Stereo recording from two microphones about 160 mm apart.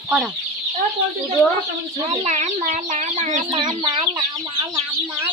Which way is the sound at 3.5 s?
25° right (ahead or behind).